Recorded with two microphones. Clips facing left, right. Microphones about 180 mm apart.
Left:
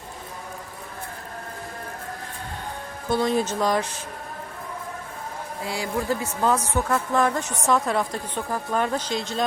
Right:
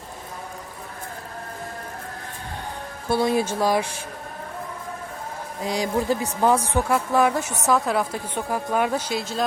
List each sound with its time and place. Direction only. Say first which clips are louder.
3.1 s a woman's voice: right 1 dB; 10° right (ahead or behind)
5.6 s a woman's voice: right 4 dB; 15° right (ahead or behind)